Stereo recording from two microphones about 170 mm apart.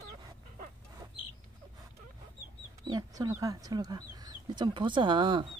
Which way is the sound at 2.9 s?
20° right (ahead or behind).